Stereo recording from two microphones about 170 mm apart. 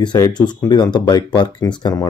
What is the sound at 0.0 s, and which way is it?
Speech, 25° left (ahead or behind).